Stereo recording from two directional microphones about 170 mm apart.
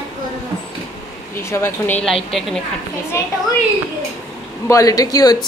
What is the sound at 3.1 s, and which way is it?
Speech, 15° left (ahead or behind).